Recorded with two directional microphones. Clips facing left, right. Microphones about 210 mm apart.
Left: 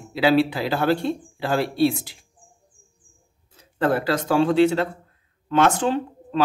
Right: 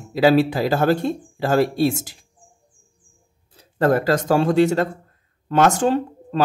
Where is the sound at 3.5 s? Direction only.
40° right (ahead or behind).